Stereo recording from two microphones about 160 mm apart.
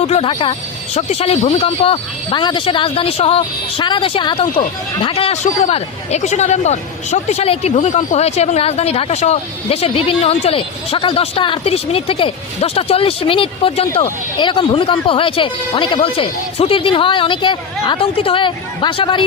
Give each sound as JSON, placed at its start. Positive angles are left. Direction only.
{"t": 0.0, "sound": "speech", "side_deg": 40}
{"t": 0.9, "sound": "speech", "side_deg": 45}